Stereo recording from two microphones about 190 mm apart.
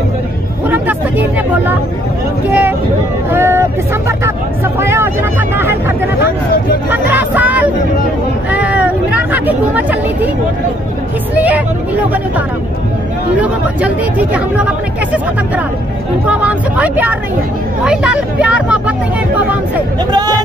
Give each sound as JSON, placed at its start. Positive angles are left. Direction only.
{"t": 0.7, "sound": "a sound", "side_deg": -10}
{"t": 2.4, "sound": "a sound", "side_deg": -10}
{"t": 3.3, "sound": "vehicle", "side_deg": -10}
{"t": 4.7, "sound": "vehicle", "side_deg": -15}
{"t": 6.9, "sound": "a sound", "side_deg": -10}
{"t": 8.5, "sound": "hubbub", "side_deg": -5}
{"t": 11.3, "sound": "speech", "side_deg": -10}
{"t": 16.3, "sound": "speech", "side_deg": -5}
{"t": 20.1, "sound": "speech", "side_deg": -20}